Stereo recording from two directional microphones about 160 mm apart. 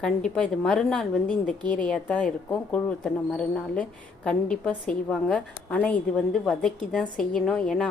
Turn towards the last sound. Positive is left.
turn(degrees=5)  # may be behind; listen again after turning